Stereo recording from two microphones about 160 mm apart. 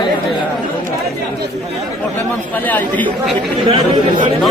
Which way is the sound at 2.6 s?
10° left (ahead or behind).